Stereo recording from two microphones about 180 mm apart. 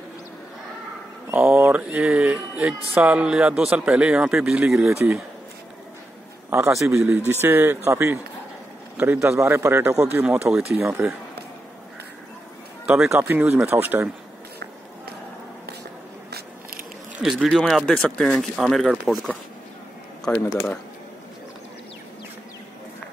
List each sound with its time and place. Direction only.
1.3 s speech: 10° right (ahead or behind)
6.5 s speech: 15° right (ahead or behind)
12.8 s a man's voice: 5° right (ahead or behind)
16.3 s biting: 60° right (ahead or behind)
17.2 s speech: 5° right (ahead or behind)
20.3 s speech: 15° left (ahead or behind)